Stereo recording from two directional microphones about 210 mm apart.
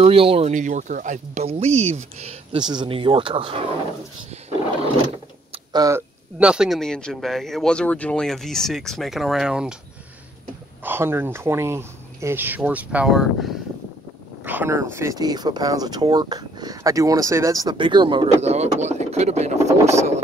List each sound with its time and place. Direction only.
0.0 s speech: 25° right (ahead or behind)
5.5 s a sound: 20° right (ahead or behind)
6.4 s speech: 5° right (ahead or behind)
10.8 s speech: 10° right (ahead or behind); by 19.6 s 30° right (ahead or behind)